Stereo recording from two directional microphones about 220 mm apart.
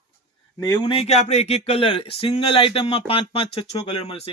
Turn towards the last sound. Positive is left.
turn(degrees=25)  # may be behind; listen again after turning